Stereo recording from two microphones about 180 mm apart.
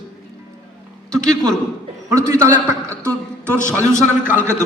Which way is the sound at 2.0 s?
15° right (ahead or behind).